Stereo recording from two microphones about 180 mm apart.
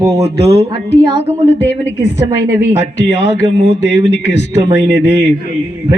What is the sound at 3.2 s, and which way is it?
A man's voice, 75° left (ahead or behind).